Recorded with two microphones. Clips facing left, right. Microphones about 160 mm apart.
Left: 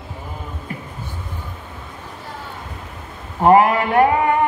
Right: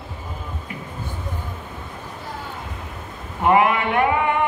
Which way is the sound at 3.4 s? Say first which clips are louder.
Left 4 dB; 40° left (ahead or behind).